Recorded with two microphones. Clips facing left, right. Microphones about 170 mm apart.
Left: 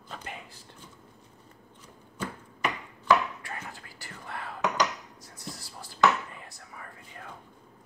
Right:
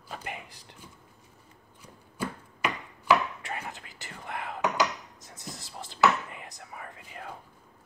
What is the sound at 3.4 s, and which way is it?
Whispering, 20° right (ahead or behind).